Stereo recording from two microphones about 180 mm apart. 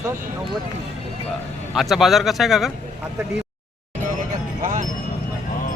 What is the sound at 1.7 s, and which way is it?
Speech, centre (ahead or behind).